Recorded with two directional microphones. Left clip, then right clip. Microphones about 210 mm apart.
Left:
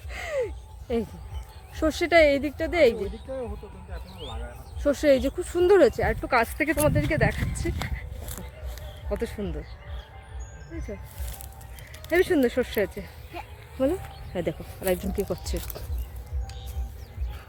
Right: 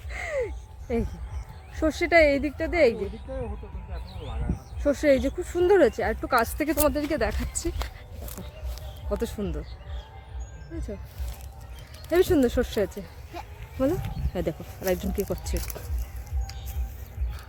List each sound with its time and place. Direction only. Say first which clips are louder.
0.1 s a sound: even; centre (ahead or behind)
1.7 s speech: even; centre (ahead or behind)
2.9 s speech: left 1 dB; 35° left (ahead or behind)
4.8 s speech: left 1 dB; centre (ahead or behind)
7.8 s speech: left 2 dB; 5° left (ahead or behind)
9.2 s speech: right 1 dB; 15° right (ahead or behind)
12.1 s speech: even; 10° right (ahead or behind)
13.3 s a sound: even; centre (ahead or behind)
14.3 s speech: left 1 dB; centre (ahead or behind)